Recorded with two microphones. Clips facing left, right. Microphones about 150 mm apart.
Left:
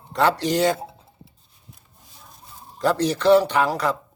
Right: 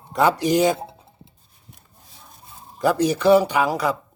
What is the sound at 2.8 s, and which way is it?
Speech, 10° right (ahead or behind).